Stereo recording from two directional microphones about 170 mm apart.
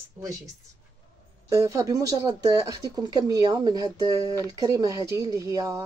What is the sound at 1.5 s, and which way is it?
Speech, 20° right (ahead or behind).